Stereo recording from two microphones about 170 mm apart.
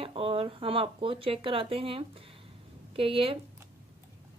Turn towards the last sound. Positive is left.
turn(degrees=-30)  # may be behind; listen again after turning